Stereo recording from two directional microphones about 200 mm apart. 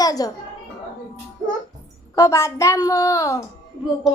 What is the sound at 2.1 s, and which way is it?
A woman's voice, 15° left (ahead or behind).